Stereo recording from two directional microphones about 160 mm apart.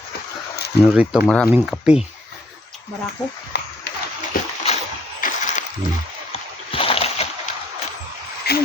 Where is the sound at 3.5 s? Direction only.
90° left.